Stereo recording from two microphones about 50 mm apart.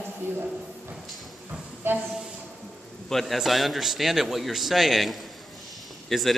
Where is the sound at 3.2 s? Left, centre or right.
Centre.